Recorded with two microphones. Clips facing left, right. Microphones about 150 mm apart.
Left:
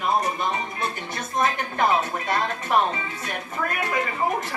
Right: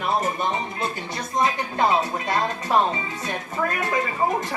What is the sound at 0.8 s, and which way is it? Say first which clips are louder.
Speech: right 1 dB; 20° right (ahead or behind).